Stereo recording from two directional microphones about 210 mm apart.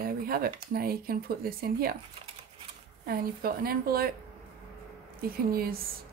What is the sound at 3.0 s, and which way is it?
Speech, 45° right (ahead or behind).